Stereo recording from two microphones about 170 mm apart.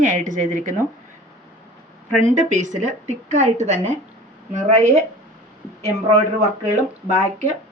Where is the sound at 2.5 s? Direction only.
45° right (ahead or behind).